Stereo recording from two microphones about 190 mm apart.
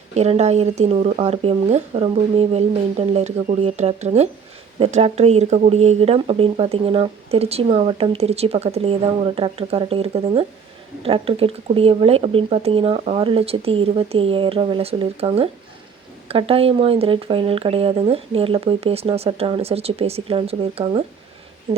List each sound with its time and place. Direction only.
0.1 s speech: 35° right (ahead or behind)